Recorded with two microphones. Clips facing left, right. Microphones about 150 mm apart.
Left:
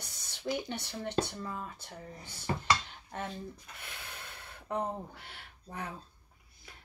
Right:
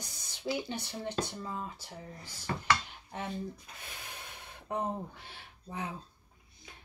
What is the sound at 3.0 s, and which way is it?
Speech, 10° right (ahead or behind).